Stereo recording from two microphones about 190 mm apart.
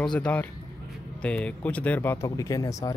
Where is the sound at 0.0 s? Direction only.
5° left (ahead or behind).